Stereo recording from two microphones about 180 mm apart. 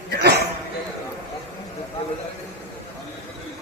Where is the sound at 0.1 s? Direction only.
65° right (ahead or behind).